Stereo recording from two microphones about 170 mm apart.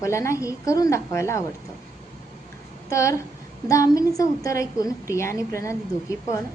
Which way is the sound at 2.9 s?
15° left (ahead or behind).